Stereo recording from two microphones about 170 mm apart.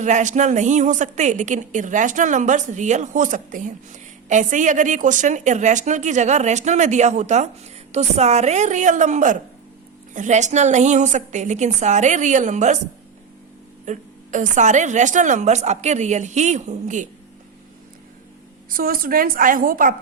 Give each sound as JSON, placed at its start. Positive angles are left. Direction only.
{"t": 0.0, "sound": "a woman's voice", "side_deg": -45}
{"t": 13.8, "sound": "a woman's voice", "side_deg": -45}
{"t": 18.7, "sound": "a woman's voice", "side_deg": -60}